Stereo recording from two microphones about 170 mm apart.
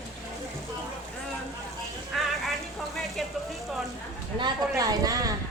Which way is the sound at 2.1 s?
Centre (ahead or behind).